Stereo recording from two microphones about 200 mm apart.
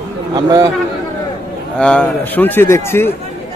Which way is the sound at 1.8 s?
5° left (ahead or behind).